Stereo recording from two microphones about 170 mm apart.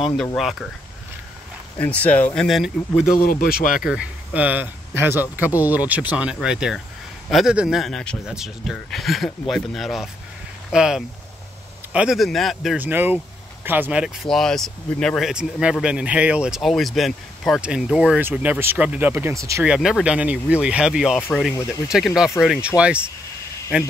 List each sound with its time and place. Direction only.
0.4 s speech: centre (ahead or behind)
1.8 s speech: 10° left (ahead or behind)
3.1 s speech: 60° left (ahead or behind)
3.8 s speech: 5° right (ahead or behind)
12.8 s speech: 10° right (ahead or behind)
19.6 s speech: 5° right (ahead or behind)